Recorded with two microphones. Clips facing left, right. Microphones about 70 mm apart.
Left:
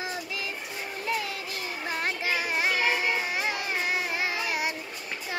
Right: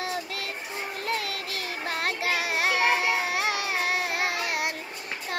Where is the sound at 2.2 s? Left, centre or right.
Right.